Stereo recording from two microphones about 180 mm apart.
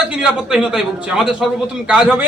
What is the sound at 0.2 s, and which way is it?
A man's voice, 5° right (ahead or behind).